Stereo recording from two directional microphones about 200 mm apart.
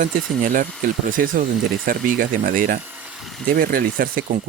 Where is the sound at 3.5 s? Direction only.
45° right (ahead or behind).